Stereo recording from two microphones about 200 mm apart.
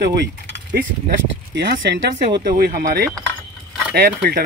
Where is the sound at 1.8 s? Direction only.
55° right (ahead or behind).